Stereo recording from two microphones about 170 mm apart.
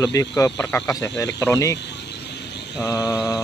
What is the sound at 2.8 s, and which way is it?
Speech, 20° left (ahead or behind).